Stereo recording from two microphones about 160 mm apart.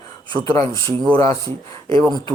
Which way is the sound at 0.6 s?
20° left (ahead or behind).